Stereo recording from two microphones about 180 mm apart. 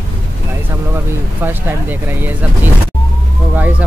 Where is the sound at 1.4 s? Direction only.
10° right (ahead or behind).